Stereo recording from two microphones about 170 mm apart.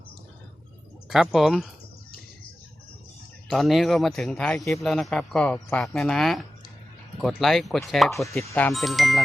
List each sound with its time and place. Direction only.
1.1 s speech: centre (ahead or behind)
3.5 s speech: centre (ahead or behind)